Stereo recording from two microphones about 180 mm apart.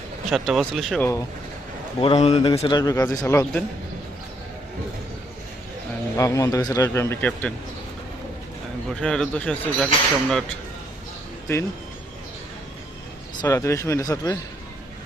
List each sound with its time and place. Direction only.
0.3 s speech: centre (ahead or behind)
2.0 s a man's voice: 35° left (ahead or behind); by 3.6 s 15° left (ahead or behind)
6.1 s speech: 20° left (ahead or behind)
8.9 s speech: 5° left (ahead or behind)
13.4 s speech: 15° left (ahead or behind)